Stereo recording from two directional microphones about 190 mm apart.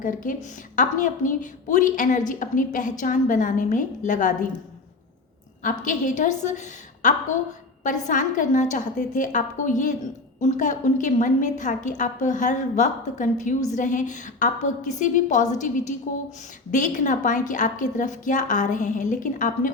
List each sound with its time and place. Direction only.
0.0 s a woman's voice: 45° left (ahead or behind)
5.6 s a woman's voice: 40° left (ahead or behind)